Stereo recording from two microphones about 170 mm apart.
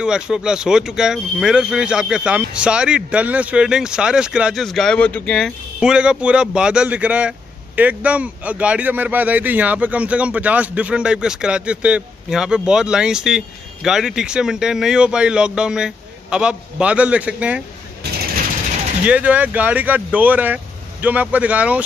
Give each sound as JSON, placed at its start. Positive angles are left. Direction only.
{"t": 0.0, "sound": "speech", "side_deg": -5}
{"t": 18.0, "sound": "mechanisms", "side_deg": -70}
{"t": 19.0, "sound": "speech", "side_deg": -5}